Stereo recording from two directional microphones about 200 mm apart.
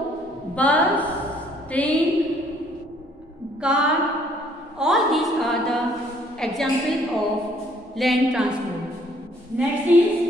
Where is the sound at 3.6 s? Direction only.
5° right (ahead or behind).